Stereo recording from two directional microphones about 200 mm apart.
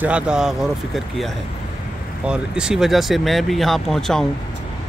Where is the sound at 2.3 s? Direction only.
5° right (ahead or behind).